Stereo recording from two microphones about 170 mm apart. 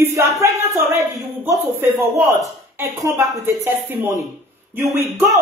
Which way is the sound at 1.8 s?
15° right (ahead or behind).